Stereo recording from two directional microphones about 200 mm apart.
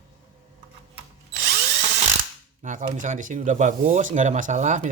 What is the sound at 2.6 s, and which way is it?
Speech, 40° right (ahead or behind).